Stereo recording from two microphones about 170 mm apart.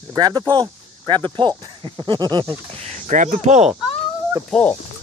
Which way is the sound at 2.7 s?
40° right (ahead or behind).